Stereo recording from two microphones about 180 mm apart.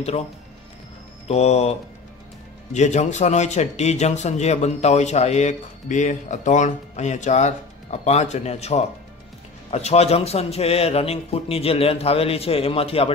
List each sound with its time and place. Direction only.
1.2 s speech: 35° left (ahead or behind)